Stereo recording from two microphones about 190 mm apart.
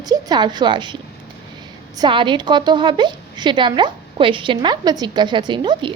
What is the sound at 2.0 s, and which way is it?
A woman's voice, 25° right (ahead or behind).